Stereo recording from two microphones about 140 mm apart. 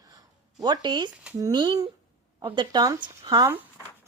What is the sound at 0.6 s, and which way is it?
A woman's voice, 30° right (ahead or behind).